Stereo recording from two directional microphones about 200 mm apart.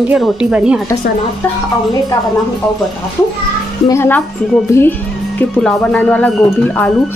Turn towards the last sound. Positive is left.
turn(degrees=10)  # may be behind; listen again after turning